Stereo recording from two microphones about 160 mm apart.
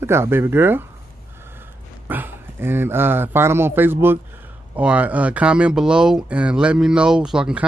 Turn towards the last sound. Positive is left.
turn(degrees=-5)  # may be behind; listen again after turning